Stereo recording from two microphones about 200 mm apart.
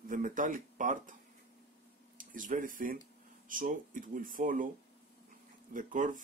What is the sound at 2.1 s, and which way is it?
Speech, 40° right (ahead or behind).